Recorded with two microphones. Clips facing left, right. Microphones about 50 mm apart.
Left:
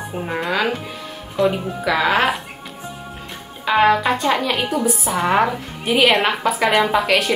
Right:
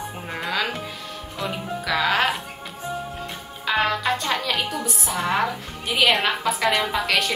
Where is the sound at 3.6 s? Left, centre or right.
Centre.